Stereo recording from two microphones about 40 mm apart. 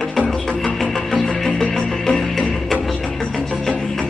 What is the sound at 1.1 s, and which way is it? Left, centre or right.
Music, centre.